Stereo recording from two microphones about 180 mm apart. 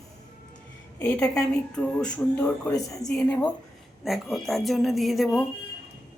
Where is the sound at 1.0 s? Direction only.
5° left (ahead or behind).